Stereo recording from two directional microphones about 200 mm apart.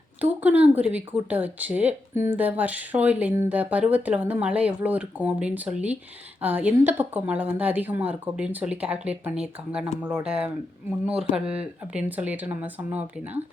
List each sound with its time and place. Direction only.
0.2 s speech: 10° right (ahead or behind)